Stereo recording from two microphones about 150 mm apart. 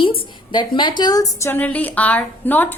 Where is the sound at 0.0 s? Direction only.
30° left (ahead or behind).